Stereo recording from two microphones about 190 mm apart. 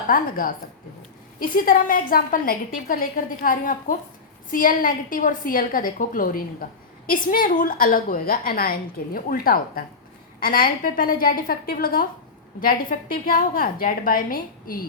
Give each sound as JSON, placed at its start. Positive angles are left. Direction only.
{"t": 0.1, "sound": "a woman's voice", "side_deg": 50}